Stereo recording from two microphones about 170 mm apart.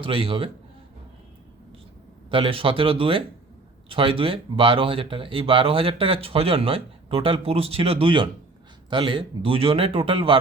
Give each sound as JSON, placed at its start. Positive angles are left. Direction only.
{"t": 0.0, "sound": "speech", "side_deg": -30}
{"t": 2.3, "sound": "speech", "side_deg": -30}